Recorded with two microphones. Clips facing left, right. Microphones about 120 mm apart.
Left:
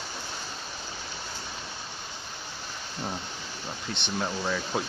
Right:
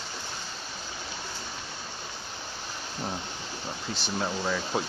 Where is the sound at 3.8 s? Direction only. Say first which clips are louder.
Even; 5° right (ahead or behind).